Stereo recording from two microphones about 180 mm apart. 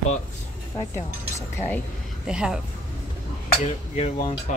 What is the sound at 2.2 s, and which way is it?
Speech, 5° right (ahead or behind).